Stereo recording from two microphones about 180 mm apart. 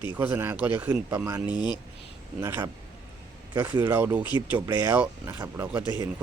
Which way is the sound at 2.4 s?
15° right (ahead or behind).